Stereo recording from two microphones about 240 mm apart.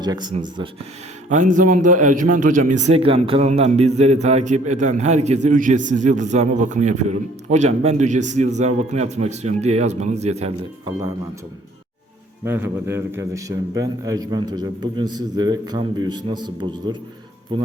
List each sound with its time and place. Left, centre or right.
0.0 s a man's voice: centre
1.3 s a man's voice: right
12.5 s a man's voice: centre